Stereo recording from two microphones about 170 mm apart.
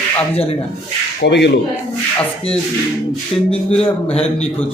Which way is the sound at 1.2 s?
80° left.